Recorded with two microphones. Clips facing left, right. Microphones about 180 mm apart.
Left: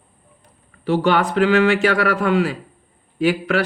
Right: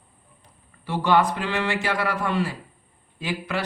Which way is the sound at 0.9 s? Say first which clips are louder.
Left 4 dB; 75° left (ahead or behind).